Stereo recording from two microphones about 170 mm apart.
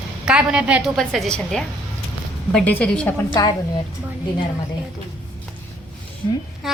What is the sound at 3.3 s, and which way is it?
Speech, 20° left (ahead or behind).